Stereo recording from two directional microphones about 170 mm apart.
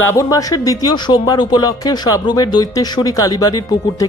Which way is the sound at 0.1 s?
20° left (ahead or behind).